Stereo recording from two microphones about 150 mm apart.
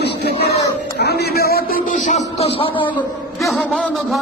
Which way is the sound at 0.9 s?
90° left.